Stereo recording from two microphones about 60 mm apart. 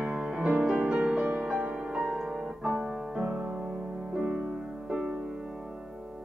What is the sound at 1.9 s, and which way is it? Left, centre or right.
Music, centre.